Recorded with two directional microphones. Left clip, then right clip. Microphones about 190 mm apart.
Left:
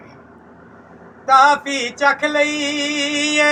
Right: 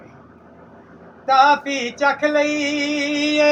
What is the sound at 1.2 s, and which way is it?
Music, 10° right (ahead or behind).